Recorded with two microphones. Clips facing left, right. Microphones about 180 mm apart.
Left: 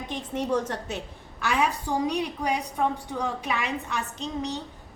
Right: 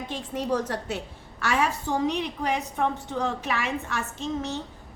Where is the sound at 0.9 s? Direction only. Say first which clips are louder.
Right 2 dB; 20° left (ahead or behind).